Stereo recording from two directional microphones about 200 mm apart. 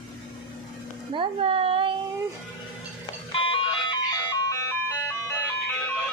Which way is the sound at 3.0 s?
25° left (ahead or behind).